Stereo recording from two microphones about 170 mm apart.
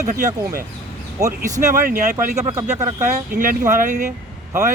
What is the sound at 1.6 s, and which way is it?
Speech, 55° right (ahead or behind).